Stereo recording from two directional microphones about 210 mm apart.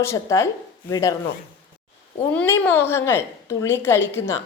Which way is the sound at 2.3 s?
10° left (ahead or behind).